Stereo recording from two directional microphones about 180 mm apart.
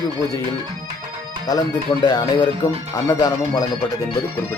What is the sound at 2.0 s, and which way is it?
Speech, 25° left (ahead or behind).